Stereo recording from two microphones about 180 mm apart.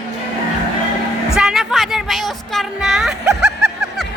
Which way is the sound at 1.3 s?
Centre (ahead or behind).